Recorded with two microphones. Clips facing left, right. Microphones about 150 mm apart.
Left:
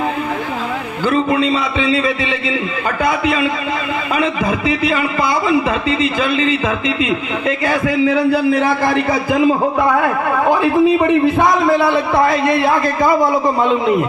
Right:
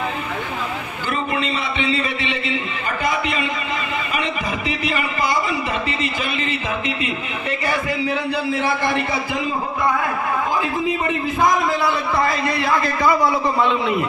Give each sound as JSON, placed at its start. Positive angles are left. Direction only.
{"t": 7.0, "sound": "a man's voice", "side_deg": 90}
{"t": 9.5, "sound": "a man's voice", "side_deg": 80}